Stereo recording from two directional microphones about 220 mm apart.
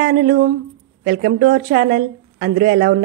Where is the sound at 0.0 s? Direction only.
45° right (ahead or behind).